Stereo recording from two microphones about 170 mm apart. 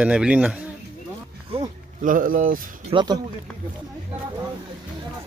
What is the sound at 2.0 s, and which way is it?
Speech, 50° right (ahead or behind).